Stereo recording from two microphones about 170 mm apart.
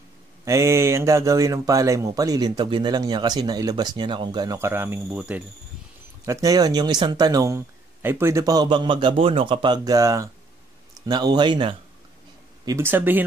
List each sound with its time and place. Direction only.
0.5 s speech: 15° right (ahead or behind)
6.2 s speech: 20° right (ahead or behind)
12.6 s speech: 15° right (ahead or behind)